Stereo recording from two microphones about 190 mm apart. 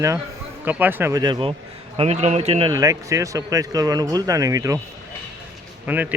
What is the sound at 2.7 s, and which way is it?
Speech, 15° right (ahead or behind).